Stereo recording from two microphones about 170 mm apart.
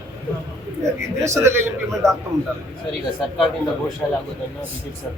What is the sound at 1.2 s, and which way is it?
Speech, 15° right (ahead or behind).